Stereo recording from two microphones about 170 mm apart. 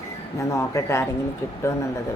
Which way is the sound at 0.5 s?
15° left (ahead or behind).